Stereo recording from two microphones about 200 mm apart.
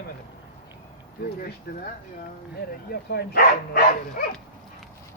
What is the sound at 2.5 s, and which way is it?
Speech, 50° left (ahead or behind).